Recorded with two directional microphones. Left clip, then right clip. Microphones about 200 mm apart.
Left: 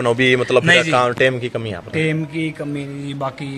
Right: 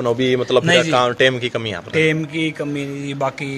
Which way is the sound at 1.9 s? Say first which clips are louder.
Right 4 dB; 20° right (ahead or behind).